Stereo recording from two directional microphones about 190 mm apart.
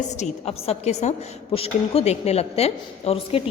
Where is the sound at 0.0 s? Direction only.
35° left (ahead or behind).